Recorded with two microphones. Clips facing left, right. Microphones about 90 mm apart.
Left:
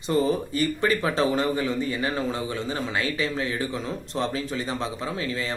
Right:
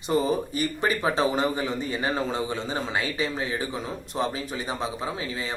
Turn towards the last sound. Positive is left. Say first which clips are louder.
# left 2 dB
turn(degrees=-15)  # may be behind; listen again after turning